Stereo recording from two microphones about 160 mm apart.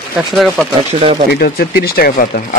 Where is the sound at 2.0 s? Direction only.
70° left (ahead or behind).